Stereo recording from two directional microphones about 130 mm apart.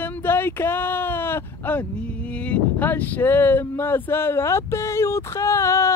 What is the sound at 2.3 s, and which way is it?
Speech, 10° left (ahead or behind).